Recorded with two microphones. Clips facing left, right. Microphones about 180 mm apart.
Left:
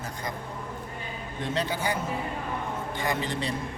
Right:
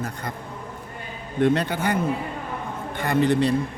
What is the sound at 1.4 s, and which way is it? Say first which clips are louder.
Speech: right 9 dB; 60° right (ahead or behind).